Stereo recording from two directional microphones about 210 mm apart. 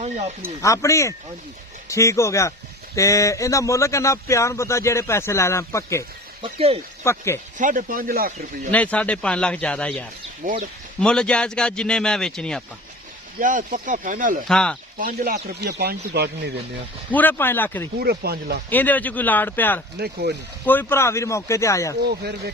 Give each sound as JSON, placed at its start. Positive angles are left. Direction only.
{"t": 0.6, "sound": "speech", "side_deg": 15}
{"t": 6.4, "sound": "speech", "side_deg": -30}
{"t": 7.0, "sound": "speech", "side_deg": 15}
{"t": 7.6, "sound": "speech", "side_deg": -40}
{"t": 8.7, "sound": "a man's voice", "side_deg": 5}
{"t": 10.4, "sound": "speech", "side_deg": -40}
{"t": 11.0, "sound": "a man's voice", "side_deg": 5}
{"t": 13.4, "sound": "speech", "side_deg": -40}
{"t": 14.4, "sound": "a man's voice", "side_deg": 5}
{"t": 14.9, "sound": "speech", "side_deg": -45}
{"t": 17.1, "sound": "speech", "side_deg": 10}
{"t": 18.0, "sound": "speech", "side_deg": -50}
{"t": 18.7, "sound": "speech", "side_deg": 10}
{"t": 22.0, "sound": "speech", "side_deg": -50}